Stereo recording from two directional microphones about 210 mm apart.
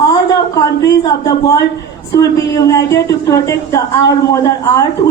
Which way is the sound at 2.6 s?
15° left (ahead or behind).